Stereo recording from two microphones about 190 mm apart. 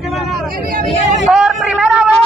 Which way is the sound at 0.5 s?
50° right (ahead or behind).